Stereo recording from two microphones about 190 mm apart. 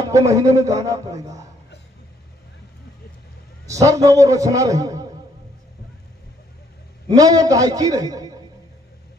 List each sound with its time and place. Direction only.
0.0 s a man's voice: 15° right (ahead or behind)
3.6 s a man's voice: 15° right (ahead or behind)
7.1 s a man's voice: 20° right (ahead or behind)